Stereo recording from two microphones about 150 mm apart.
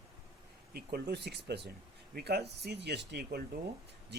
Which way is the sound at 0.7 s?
90° right.